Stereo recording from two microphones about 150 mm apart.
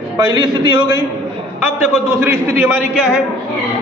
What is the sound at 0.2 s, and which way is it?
Speech, 30° right (ahead or behind).